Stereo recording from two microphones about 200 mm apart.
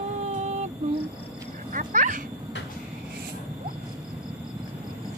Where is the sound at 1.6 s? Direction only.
40° right (ahead or behind).